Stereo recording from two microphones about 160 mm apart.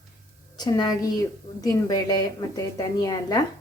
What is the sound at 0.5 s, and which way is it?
A woman's voice, 25° left (ahead or behind).